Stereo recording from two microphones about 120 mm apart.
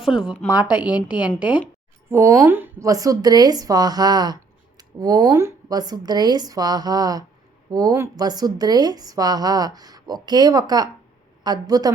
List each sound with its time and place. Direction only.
0.0 s a woman's voice: 5° right (ahead or behind)
2.0 s a woman's voice: 25° right (ahead or behind)